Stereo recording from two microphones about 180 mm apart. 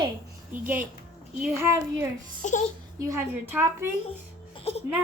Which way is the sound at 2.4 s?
40° left (ahead or behind).